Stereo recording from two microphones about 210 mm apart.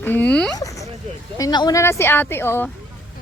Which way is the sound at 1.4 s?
20° left (ahead or behind).